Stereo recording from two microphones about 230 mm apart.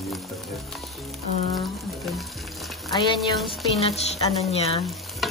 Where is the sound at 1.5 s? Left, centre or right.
Centre.